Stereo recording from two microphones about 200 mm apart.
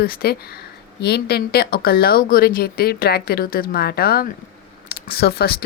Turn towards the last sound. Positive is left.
turn(degrees=50)  # may be behind; listen again after turning